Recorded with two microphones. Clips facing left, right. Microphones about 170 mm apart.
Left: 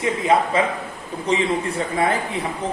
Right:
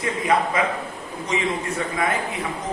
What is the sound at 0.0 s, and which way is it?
A man's voice, 25° left (ahead or behind).